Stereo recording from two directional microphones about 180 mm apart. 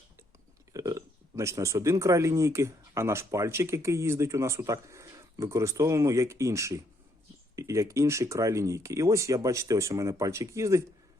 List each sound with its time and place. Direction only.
0.7 s speech: 20° right (ahead or behind)